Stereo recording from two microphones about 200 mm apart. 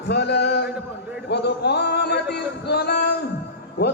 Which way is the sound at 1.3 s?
55° left (ahead or behind).